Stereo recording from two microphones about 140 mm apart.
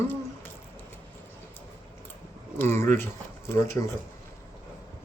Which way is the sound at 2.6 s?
15° left (ahead or behind).